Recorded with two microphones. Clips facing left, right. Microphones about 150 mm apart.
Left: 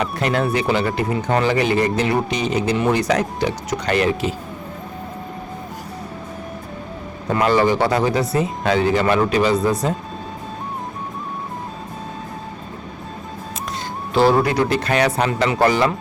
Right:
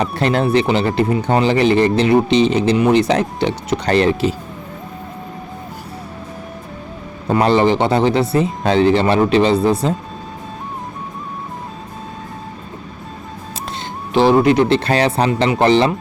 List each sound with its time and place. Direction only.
0.0 s speech: 30° right (ahead or behind)
7.3 s speech: 30° right (ahead or behind)
14.1 s speech: 20° right (ahead or behind)